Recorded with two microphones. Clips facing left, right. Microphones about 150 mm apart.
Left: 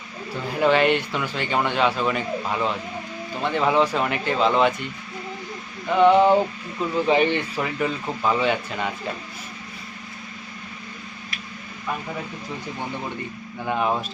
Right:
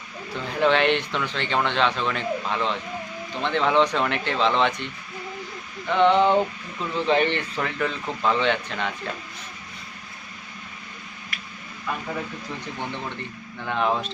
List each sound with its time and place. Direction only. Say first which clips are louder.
0.6 s a man's voice: left 2 dB; 5° left (ahead or behind)
5.9 s a man's voice: left 3 dB; 5° left (ahead or behind)
13.7 s a man's voice: left 1 dB; 10° left (ahead or behind)